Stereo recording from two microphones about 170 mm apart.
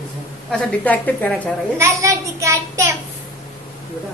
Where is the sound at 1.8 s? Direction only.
15° right (ahead or behind).